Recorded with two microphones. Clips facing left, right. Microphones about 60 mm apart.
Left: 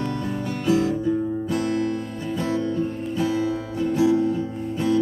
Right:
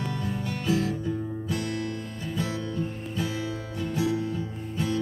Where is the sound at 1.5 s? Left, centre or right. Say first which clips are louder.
Left 7 dB; left.